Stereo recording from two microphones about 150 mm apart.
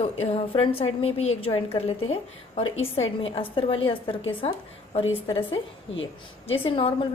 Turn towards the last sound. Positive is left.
turn(degrees=35)  # may be behind; listen again after turning